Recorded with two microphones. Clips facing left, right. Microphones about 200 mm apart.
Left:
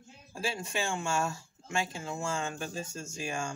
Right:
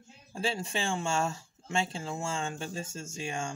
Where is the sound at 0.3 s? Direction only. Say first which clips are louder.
Right 2 dB; 30° right (ahead or behind).